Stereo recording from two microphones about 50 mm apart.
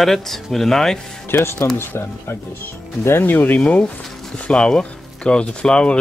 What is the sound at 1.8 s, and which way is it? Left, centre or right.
Speech, left.